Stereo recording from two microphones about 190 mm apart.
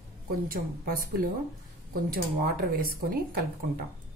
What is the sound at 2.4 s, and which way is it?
Speech, 50° right (ahead or behind).